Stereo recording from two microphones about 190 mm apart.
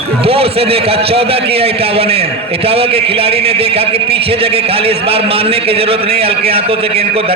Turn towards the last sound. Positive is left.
turn(degrees=-30)  # may be behind; listen again after turning